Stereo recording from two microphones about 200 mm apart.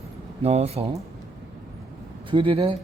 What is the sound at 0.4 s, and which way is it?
Speech, 30° right (ahead or behind).